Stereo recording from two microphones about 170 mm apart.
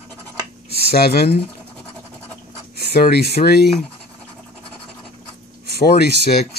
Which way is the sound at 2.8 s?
70° left (ahead or behind).